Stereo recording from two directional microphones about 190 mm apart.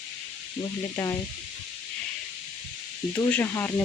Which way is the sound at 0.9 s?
20° left (ahead or behind).